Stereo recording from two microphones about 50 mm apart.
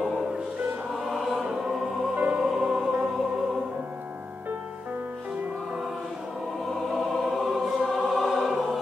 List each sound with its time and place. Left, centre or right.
0.9 s choir: centre
2.1 s music: right
2.4 s music: centre
6.6 s music: centre
8.3 s choir: centre